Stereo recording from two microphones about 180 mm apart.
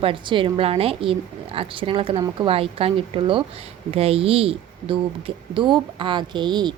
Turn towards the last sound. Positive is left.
turn(degrees=-25)  # may be behind; listen again after turning